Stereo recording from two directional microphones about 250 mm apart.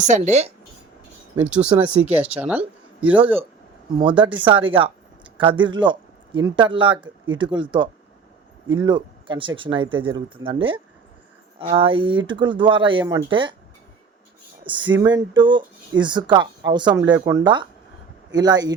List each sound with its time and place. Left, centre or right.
0.0 s speech: right
1.4 s speech: centre
3.9 s speech: centre
14.6 s speech: centre